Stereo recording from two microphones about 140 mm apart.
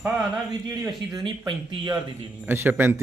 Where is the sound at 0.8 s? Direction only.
30° right (ahead or behind).